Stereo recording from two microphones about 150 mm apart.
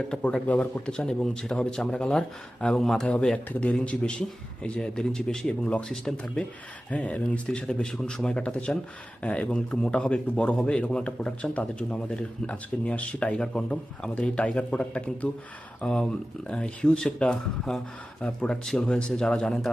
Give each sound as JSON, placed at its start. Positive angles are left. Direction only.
{"t": 0.1, "sound": "speech", "side_deg": 5}